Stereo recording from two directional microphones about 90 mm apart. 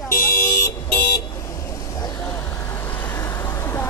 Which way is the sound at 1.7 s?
40° left (ahead or behind).